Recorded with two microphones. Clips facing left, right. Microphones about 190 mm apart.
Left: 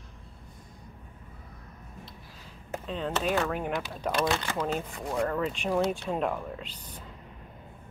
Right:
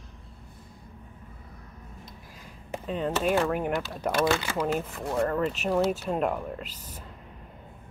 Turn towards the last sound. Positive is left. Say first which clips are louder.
# right 2 dB
turn(degrees=-5)  # may be behind; listen again after turning